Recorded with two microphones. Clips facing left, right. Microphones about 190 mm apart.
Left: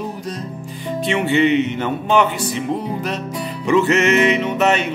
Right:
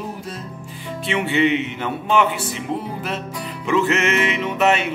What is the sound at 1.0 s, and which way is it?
Music, centre (ahead or behind).